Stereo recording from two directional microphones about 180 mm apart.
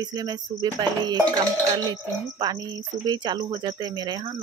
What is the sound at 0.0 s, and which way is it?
Speech, 20° right (ahead or behind).